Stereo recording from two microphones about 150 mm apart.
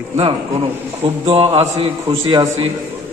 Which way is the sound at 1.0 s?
40° right (ahead or behind).